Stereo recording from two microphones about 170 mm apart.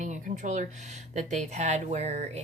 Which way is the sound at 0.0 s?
45° right (ahead or behind).